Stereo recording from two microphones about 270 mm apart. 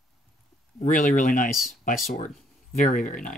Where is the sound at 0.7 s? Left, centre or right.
Left.